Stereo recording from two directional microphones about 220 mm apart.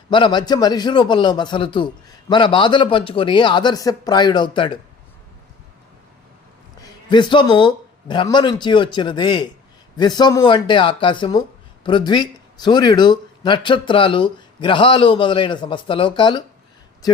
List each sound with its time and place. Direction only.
0.1 s speech: 20° left (ahead or behind)
6.8 s speech: 20° left (ahead or behind)